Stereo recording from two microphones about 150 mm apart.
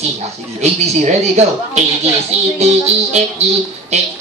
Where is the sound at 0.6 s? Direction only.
50° right (ahead or behind).